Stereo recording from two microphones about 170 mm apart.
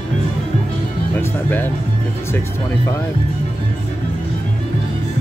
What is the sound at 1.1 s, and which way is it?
Music, 10° left (ahead or behind).